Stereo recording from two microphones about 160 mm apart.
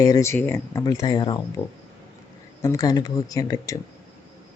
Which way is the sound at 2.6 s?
20° left (ahead or behind).